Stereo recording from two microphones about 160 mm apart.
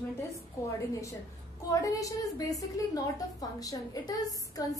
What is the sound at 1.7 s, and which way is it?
A woman's voice, 20° left (ahead or behind).